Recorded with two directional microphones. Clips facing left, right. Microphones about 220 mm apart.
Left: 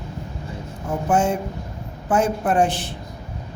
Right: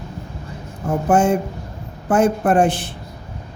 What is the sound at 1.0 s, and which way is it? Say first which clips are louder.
A man's voice: right 4 dB; 50° right (ahead or behind).